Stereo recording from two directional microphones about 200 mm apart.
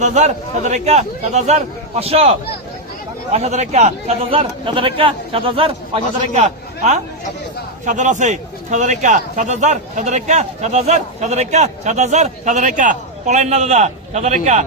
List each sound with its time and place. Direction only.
0.0 s a man's voice: 35° right (ahead or behind)
3.3 s a man's voice: 35° right (ahead or behind)